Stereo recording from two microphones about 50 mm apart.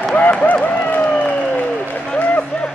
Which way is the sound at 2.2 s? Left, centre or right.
Left.